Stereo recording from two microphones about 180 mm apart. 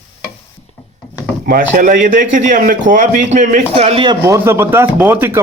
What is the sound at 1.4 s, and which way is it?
A man's voice, 50° right (ahead or behind).